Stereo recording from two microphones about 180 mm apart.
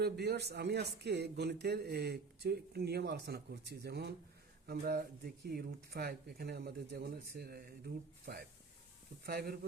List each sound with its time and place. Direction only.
0.0 s speech: 65° right (ahead or behind)
9.2 s speech: 60° right (ahead or behind)